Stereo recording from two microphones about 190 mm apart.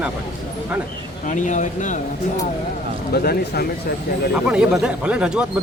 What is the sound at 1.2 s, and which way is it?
Speech, 40° left (ahead or behind).